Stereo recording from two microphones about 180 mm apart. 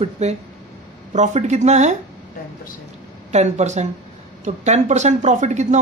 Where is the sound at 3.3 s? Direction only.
40° right (ahead or behind).